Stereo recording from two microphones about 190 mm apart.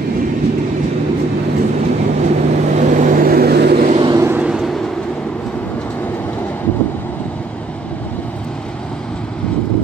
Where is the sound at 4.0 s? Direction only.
15° right (ahead or behind).